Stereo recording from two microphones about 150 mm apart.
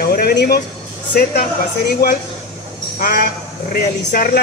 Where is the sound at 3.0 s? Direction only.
75° left (ahead or behind).